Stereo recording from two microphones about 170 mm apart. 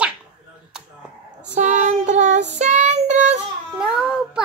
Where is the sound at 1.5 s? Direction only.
45° right (ahead or behind).